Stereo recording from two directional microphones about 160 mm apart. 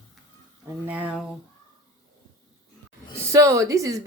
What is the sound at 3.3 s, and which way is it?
Speech, 20° right (ahead or behind).